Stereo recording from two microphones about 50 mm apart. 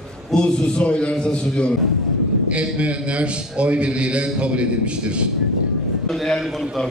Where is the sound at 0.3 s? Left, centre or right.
Left.